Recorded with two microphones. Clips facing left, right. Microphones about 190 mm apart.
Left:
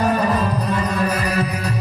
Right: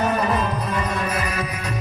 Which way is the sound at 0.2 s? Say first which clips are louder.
Left 3 dB; 35° left (ahead or behind).